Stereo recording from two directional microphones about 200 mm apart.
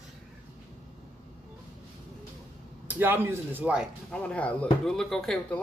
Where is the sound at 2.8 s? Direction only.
10° right (ahead or behind).